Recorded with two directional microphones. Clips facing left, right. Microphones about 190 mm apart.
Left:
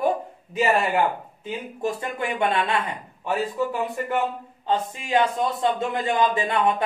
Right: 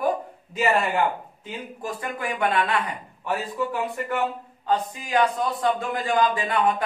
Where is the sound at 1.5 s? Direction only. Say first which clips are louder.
Left 5 dB; 25° left (ahead or behind).